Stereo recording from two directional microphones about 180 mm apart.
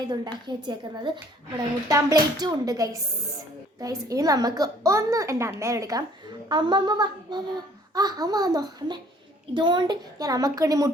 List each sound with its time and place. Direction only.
0.1 s a woman's voice: 25° right (ahead or behind)